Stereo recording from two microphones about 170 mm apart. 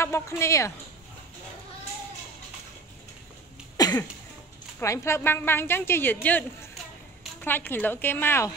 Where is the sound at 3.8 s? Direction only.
20° left (ahead or behind).